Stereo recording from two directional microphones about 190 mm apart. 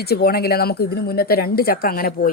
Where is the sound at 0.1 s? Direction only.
55° left (ahead or behind).